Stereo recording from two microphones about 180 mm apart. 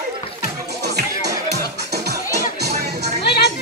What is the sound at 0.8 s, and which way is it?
Music, 65° right (ahead or behind).